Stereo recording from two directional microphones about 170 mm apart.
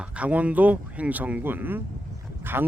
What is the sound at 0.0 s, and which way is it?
Speech, 5° right (ahead or behind).